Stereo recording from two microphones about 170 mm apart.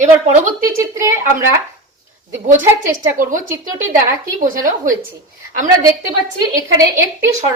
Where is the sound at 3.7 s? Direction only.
20° right (ahead or behind).